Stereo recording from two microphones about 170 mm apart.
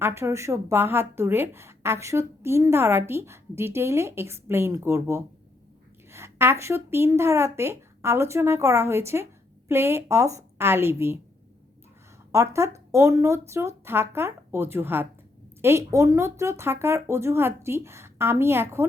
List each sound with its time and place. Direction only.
0.0 s a woman's voice: 15° right (ahead or behind)
12.3 s a woman's voice: 15° right (ahead or behind)